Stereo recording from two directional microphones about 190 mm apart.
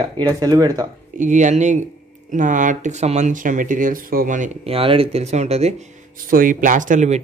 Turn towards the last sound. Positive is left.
turn(degrees=-40)  # may be behind; listen again after turning